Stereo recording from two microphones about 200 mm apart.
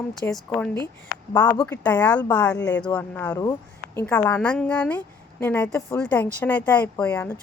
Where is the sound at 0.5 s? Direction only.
10° left (ahead or behind).